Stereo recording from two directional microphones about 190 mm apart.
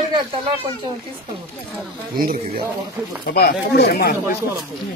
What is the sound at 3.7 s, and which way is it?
Speech, 55° left (ahead or behind).